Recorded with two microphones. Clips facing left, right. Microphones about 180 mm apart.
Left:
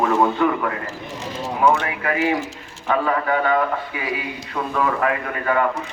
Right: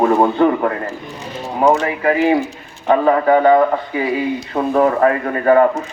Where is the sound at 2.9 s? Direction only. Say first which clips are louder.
Right 8 dB; 35° right (ahead or behind).